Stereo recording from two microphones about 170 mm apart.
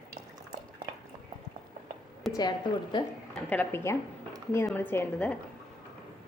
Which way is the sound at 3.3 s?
10° left (ahead or behind).